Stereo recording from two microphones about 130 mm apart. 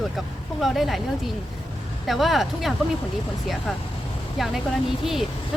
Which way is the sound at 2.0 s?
Centre (ahead or behind).